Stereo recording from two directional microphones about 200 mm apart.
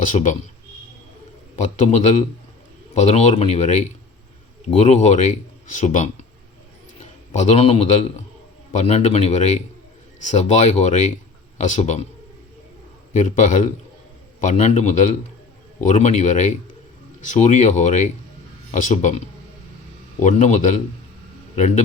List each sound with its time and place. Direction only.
0.1 s speech: 40° left (ahead or behind)
1.8 s speech: 35° left (ahead or behind)
7.3 s speech: 35° left (ahead or behind)
13.1 s speech: 35° left (ahead or behind)